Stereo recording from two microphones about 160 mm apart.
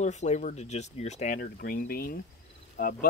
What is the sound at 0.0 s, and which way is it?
Speech, 45° left (ahead or behind).